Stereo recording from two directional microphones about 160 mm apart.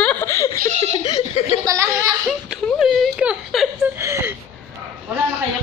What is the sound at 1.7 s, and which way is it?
Speech, 20° right (ahead or behind).